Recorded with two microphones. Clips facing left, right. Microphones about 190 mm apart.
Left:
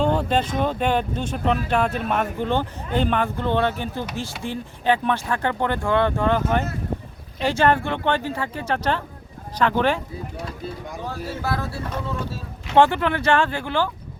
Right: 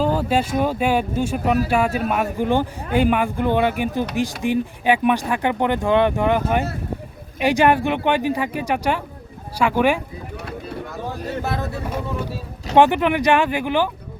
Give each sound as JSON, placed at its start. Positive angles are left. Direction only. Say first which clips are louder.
{"t": 0.0, "sound": "speech", "louder": "right 1 dB", "side_deg": -5}
{"t": 10.3, "sound": "a sound", "louder": "right 3 dB", "side_deg": -65}
{"t": 11.0, "sound": "speech", "louder": "right 2 dB", "side_deg": -20}